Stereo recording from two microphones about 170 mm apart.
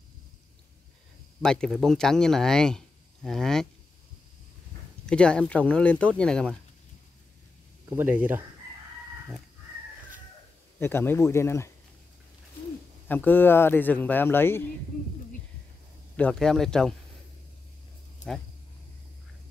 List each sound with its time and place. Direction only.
1.4 s speech: 5° left (ahead or behind)
5.0 s a man's voice: 5° left (ahead or behind)
7.9 s speech: 10° right (ahead or behind)
10.8 s a man's voice: 15° left (ahead or behind)
13.1 s a man's voice: 10° left (ahead or behind)
16.2 s speech: 5° left (ahead or behind)